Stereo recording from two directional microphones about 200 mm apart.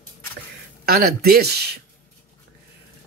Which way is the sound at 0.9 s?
50° right (ahead or behind).